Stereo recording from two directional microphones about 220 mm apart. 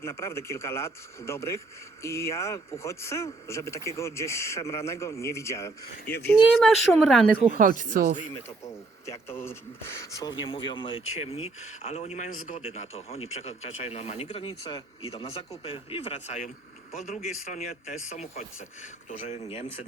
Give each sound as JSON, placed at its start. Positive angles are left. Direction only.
{"t": 0.0, "sound": "speech", "side_deg": 10}
{"t": 6.3, "sound": "speech", "side_deg": 0}
{"t": 7.5, "sound": "speech", "side_deg": -35}
{"t": 8.6, "sound": "speech", "side_deg": 10}
{"t": 17.5, "sound": "speech", "side_deg": 30}